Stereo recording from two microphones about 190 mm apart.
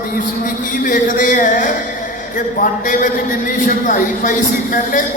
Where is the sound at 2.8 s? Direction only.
45° left (ahead or behind).